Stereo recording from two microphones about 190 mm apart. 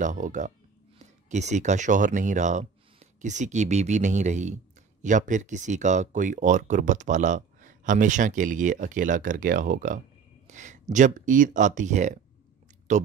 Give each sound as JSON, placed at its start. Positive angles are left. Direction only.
{"t": 0.0, "sound": "speech", "side_deg": -40}